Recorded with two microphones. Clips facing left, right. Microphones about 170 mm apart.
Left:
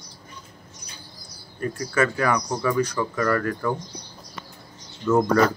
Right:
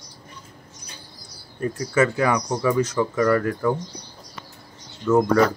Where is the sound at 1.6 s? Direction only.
20° right (ahead or behind).